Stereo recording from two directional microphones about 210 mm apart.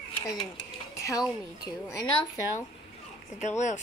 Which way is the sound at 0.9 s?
15° left (ahead or behind).